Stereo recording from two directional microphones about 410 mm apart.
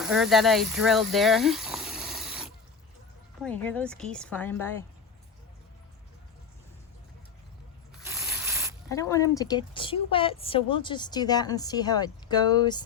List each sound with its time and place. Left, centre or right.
0.0 s a woman's voice: centre
8.0 s a sound: centre
8.9 s a woman's voice: centre